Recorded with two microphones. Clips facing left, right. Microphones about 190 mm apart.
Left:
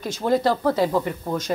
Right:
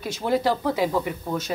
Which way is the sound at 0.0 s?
10° right (ahead or behind).